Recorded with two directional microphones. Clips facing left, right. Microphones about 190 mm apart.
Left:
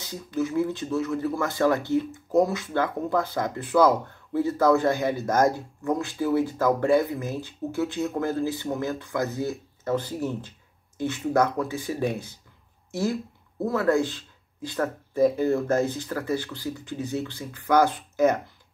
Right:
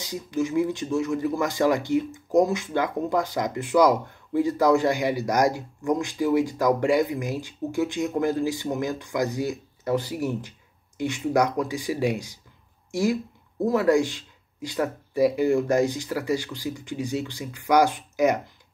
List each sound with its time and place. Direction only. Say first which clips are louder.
0.0 s speech: right 1 dB; 15° right (ahead or behind)